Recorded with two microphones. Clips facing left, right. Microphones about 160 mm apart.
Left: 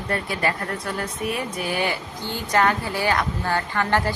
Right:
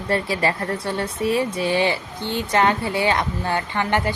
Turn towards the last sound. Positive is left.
turn(degrees=-20)  # may be behind; listen again after turning